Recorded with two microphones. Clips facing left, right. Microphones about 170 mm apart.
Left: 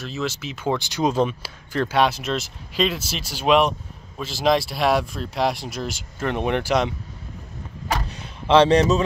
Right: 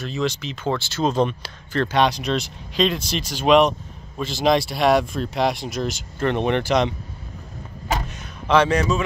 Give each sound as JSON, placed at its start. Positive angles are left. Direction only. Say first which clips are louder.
{"t": 0.0, "sound": "speech", "louder": "right 3 dB", "side_deg": 5}
{"t": 8.5, "sound": "speech", "louder": "left 3 dB", "side_deg": 30}